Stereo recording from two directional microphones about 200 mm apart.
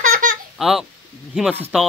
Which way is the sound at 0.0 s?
40° right (ahead or behind).